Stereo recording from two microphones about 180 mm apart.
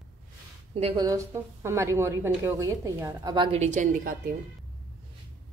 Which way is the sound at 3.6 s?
45° right (ahead or behind).